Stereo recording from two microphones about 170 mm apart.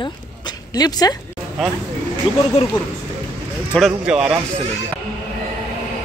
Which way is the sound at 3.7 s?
Centre (ahead or behind).